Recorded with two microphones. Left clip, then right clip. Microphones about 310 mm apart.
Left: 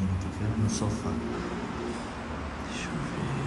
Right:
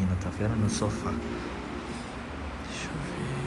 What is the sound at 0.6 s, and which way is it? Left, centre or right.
Speech, centre.